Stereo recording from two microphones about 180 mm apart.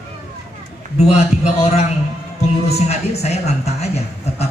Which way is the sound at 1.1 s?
40° left (ahead or behind).